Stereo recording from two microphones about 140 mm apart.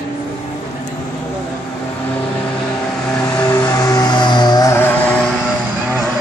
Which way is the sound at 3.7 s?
25° left (ahead or behind).